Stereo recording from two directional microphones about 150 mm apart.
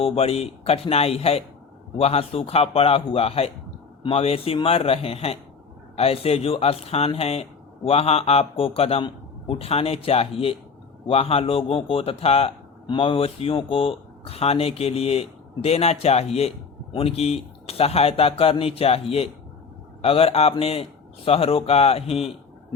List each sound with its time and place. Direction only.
0.0 s a man's voice: 40° left (ahead or behind)